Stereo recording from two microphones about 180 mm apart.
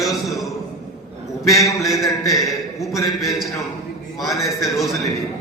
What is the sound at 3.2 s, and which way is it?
A man's voice, centre (ahead or behind).